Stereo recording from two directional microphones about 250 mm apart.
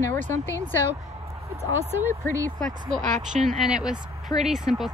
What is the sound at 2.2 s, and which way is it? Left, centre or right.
Speech, centre.